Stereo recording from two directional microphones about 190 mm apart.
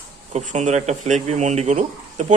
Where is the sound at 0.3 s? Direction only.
35° right (ahead or behind).